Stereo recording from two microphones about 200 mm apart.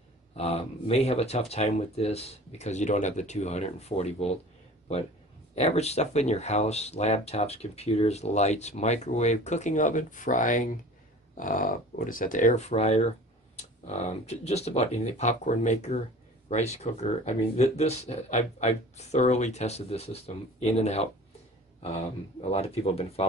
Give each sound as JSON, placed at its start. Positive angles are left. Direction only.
{"t": 0.4, "sound": "speech", "side_deg": 30}
{"t": 5.5, "sound": "speech", "side_deg": 30}